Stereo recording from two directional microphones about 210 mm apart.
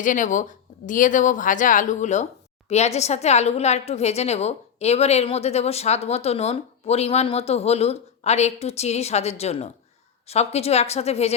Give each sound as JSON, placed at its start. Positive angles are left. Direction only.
{"t": 0.0, "sound": "a woman's voice", "side_deg": 40}